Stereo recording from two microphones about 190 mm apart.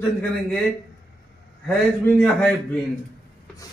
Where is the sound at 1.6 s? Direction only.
10° left (ahead or behind).